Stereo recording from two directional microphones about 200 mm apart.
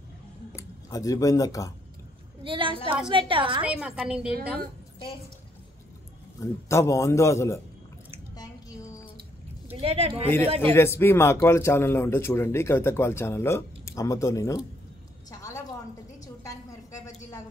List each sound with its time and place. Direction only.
0.6 s speech: 15° left (ahead or behind)
2.4 s a woman's voice: 25° right (ahead or behind)
3.6 s a woman's voice: 5° right (ahead or behind)
6.4 s a man's voice: 15° left (ahead or behind)
8.4 s drip: 15° left (ahead or behind)
9.8 s a woman's voice: 30° right (ahead or behind)
10.6 s a man's voice: 10° left (ahead or behind)
15.3 s a sound: 15° left (ahead or behind)